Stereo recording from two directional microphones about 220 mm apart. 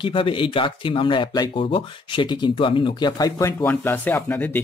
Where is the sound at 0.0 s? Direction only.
25° left (ahead or behind).